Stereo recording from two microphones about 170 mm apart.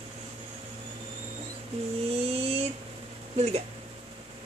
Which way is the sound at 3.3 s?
40° right (ahead or behind).